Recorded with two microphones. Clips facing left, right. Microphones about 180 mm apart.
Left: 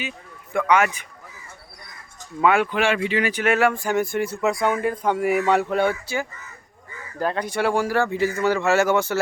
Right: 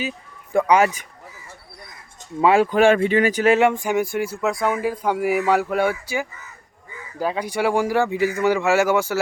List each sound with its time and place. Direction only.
0.5 s speech: 35° right (ahead or behind)
2.4 s speech: 30° right (ahead or behind)
2.6 s speech: 40° right (ahead or behind)
3.5 s speech: 20° right (ahead or behind)